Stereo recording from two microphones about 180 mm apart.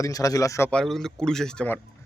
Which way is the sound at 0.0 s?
20° left (ahead or behind).